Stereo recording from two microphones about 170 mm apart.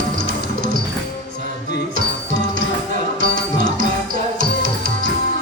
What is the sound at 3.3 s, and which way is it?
Music, 90° left.